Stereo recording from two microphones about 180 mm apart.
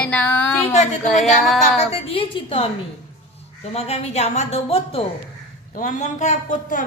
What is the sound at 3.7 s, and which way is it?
Speech, 35° left (ahead or behind).